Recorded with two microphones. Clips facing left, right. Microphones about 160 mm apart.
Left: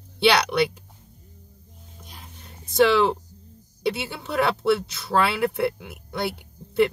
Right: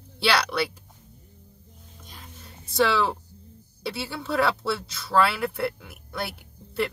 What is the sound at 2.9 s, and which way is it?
A woman's voice, 20° left (ahead or behind).